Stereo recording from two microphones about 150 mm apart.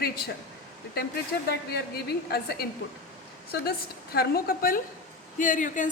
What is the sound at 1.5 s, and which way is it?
A man's voice, 90° left.